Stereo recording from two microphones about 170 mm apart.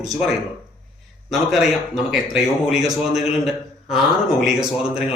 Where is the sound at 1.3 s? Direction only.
Centre (ahead or behind).